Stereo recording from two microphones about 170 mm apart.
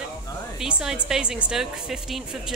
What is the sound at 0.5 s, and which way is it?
A woman's voice, 5° right (ahead or behind).